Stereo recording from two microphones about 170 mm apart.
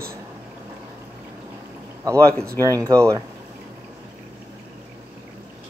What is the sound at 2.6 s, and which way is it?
Speech, 20° right (ahead or behind).